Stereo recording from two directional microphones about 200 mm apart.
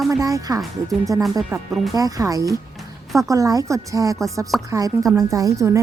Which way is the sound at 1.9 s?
20° right (ahead or behind).